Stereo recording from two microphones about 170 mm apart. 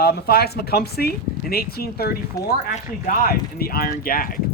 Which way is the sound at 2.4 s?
20° left (ahead or behind).